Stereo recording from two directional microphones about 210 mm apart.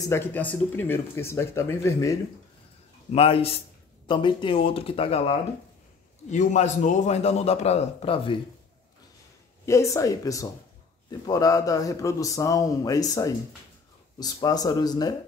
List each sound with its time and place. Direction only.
0.0 s a man's voice: 10° left (ahead or behind)
3.1 s a man's voice: 25° left (ahead or behind)
9.7 s a man's voice: 15° left (ahead or behind)